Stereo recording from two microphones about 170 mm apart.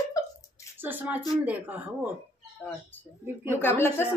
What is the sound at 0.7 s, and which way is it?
Speech, 10° right (ahead or behind).